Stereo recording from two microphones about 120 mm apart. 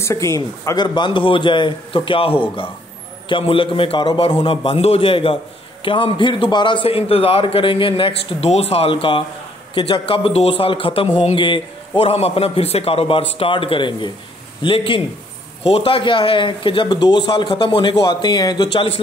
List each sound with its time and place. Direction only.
0.0 s speech: 25° left (ahead or behind)
0.7 s a man's voice: 40° left (ahead or behind)